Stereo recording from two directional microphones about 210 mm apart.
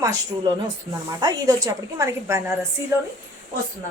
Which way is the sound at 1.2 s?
20° right (ahead or behind).